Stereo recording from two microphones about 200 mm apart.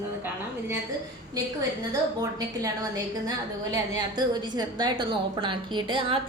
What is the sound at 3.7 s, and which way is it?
A woman's voice, 20° right (ahead or behind).